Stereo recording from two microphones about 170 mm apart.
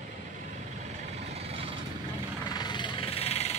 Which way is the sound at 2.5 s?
25° left (ahead or behind).